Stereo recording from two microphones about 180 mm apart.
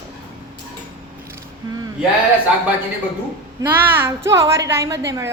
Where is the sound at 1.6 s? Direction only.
20° right (ahead or behind).